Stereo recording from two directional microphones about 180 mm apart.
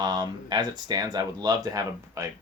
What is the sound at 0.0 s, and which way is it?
Speech, 20° right (ahead or behind).